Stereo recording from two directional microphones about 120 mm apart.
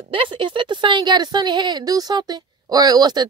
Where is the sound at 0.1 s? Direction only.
45° right (ahead or behind).